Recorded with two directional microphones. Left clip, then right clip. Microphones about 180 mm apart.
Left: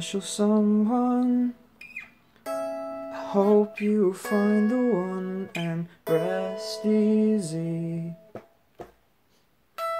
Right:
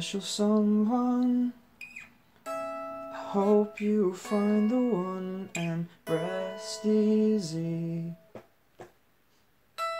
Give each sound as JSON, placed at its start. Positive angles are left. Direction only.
{"t": 0.0, "sound": "music", "side_deg": 20}
{"t": 2.4, "sound": "music", "side_deg": 40}
{"t": 3.1, "sound": "music", "side_deg": 25}